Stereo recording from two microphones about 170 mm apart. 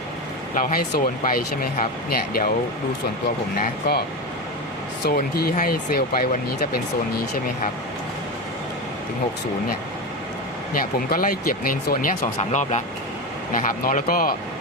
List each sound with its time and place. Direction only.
0.5 s speech: 55° left (ahead or behind)
3.6 s speech: 65° left (ahead or behind)
5.0 s speech: 65° left (ahead or behind)
10.8 s speech: 55° left (ahead or behind)
12.4 s speech: 40° left (ahead or behind)
13.5 s speech: 50° left (ahead or behind)